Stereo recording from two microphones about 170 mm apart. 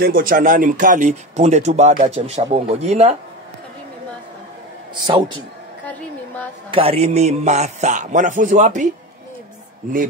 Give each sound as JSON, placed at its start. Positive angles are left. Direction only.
{"t": 0.0, "sound": "speech", "side_deg": -55}
{"t": 6.7, "sound": "speech", "side_deg": -35}